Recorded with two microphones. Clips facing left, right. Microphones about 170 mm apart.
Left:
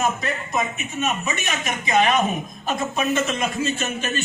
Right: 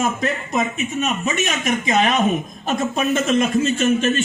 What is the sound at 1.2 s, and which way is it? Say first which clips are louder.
A man's voice: right 5 dB; 50° right (ahead or behind).